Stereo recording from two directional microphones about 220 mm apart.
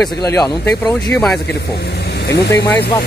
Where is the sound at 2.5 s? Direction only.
15° left (ahead or behind).